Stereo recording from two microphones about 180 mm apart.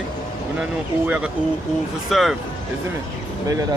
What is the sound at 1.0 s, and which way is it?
Speech, 5° right (ahead or behind).